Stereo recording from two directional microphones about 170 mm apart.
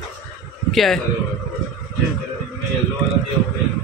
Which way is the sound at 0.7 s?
Centre (ahead or behind).